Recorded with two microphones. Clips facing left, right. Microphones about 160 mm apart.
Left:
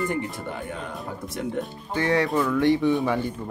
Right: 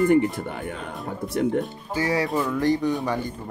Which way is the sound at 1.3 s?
60° right (ahead or behind).